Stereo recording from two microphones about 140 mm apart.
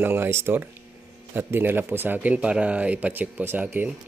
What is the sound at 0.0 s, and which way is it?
Speech, 15° right (ahead or behind).